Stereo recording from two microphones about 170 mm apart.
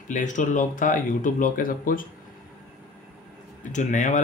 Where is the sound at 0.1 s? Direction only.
45° left (ahead or behind).